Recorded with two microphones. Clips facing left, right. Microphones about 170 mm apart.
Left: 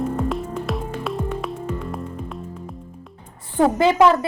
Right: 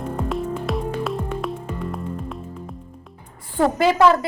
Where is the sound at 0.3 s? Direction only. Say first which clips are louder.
Right 1 dB; centre (ahead or behind).